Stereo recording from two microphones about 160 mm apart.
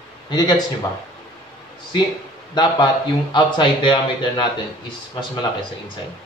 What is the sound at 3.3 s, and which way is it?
A man's voice, 30° left (ahead or behind).